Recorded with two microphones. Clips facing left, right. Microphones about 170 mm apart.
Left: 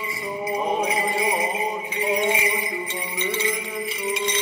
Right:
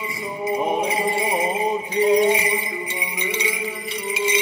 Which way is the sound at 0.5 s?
25° right (ahead or behind).